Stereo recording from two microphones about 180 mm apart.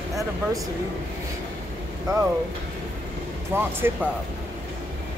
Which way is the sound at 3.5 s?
10° right (ahead or behind).